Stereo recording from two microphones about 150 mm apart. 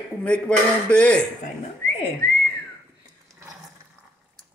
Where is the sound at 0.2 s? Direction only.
10° left (ahead or behind).